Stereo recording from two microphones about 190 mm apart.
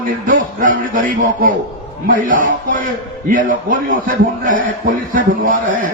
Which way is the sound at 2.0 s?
45° right (ahead or behind).